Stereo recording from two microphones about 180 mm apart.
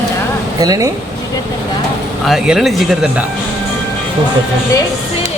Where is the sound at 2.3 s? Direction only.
5° right (ahead or behind).